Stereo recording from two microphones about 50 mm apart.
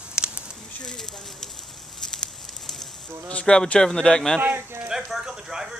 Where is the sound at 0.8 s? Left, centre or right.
Centre.